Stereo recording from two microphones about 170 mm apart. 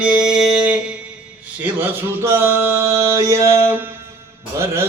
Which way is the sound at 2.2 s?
15° right (ahead or behind).